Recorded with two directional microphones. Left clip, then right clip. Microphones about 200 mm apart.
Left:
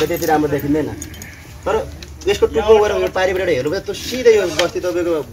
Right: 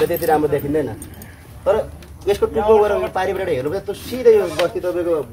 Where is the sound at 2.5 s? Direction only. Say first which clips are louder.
Left 1 dB; 35° right (ahead or behind).